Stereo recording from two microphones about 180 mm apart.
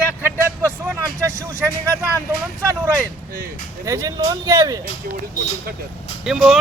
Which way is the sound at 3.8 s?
20° right (ahead or behind).